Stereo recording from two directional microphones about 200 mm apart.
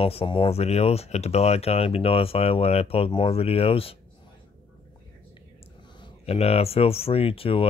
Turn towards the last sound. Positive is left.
turn(degrees=30)  # may be behind; listen again after turning